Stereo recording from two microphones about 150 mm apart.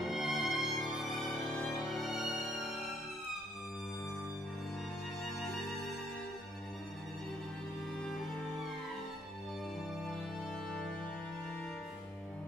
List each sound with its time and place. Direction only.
0.1 s music: centre (ahead or behind)